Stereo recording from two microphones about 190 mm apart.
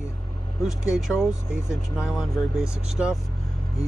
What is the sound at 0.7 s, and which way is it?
Speech, centre (ahead or behind).